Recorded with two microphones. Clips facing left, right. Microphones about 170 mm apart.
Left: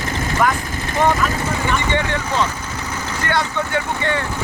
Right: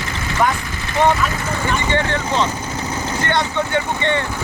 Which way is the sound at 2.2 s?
25° right (ahead or behind).